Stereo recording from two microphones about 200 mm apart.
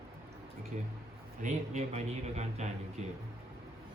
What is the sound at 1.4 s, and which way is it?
A man's voice, 30° right (ahead or behind).